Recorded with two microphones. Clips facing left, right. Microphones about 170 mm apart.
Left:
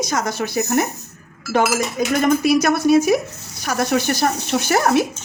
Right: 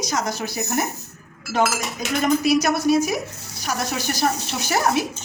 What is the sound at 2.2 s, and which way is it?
Speech, 55° left (ahead or behind).